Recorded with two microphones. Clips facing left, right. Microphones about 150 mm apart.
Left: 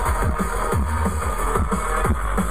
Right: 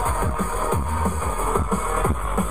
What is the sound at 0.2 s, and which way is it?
Music, 10° right (ahead or behind).